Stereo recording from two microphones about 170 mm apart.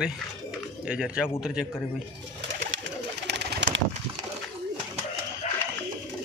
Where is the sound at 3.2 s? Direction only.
80° right.